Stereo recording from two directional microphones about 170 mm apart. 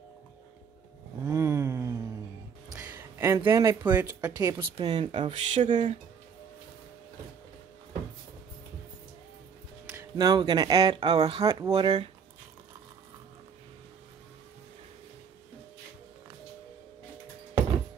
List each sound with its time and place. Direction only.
1.2 s a sound: 15° right (ahead or behind)
2.7 s music: 15° right (ahead or behind)
3.4 s speech: 15° right (ahead or behind)
9.8 s speech: 20° right (ahead or behind); by 11.4 s 35° right (ahead or behind)
11.4 s speech: 25° right (ahead or behind)